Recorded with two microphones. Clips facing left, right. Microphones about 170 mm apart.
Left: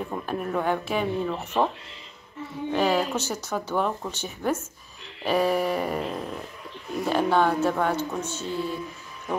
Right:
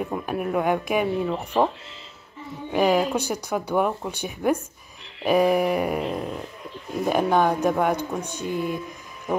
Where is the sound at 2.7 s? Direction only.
10° right (ahead or behind).